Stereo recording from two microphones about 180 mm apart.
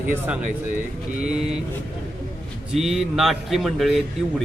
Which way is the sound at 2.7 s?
Centre (ahead or behind).